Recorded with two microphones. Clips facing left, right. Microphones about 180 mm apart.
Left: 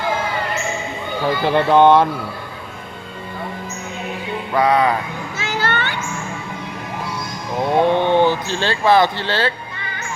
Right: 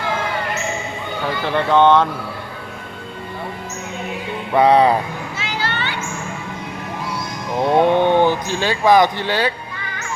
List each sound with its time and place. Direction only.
1.7 s speech: 10° left (ahead or behind)
4.5 s music: 30° right (ahead or behind)
5.4 s a sound: 50° left (ahead or behind)
7.6 s speech: 15° right (ahead or behind)